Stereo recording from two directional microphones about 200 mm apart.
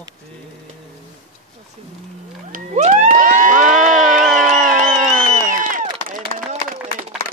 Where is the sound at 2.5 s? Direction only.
40° right (ahead or behind).